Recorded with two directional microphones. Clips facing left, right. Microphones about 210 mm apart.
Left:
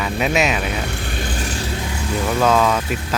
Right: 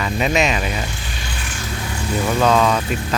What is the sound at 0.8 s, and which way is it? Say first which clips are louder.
Vehicle: left 4 dB; 60° left (ahead or behind).